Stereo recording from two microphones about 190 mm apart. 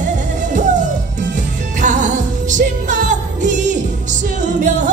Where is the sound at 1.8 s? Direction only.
40° right (ahead or behind).